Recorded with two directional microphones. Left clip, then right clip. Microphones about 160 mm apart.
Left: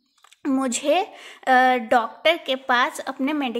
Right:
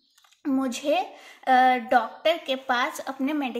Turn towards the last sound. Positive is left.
turn(degrees=30)  # may be behind; listen again after turning